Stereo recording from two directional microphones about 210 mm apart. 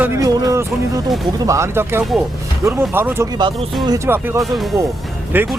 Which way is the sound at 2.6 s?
10° right (ahead or behind).